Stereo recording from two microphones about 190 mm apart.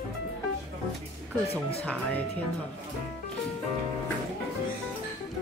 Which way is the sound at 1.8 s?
5° left (ahead or behind).